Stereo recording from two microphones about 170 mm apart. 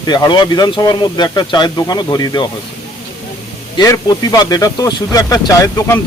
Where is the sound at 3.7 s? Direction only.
20° left (ahead or behind).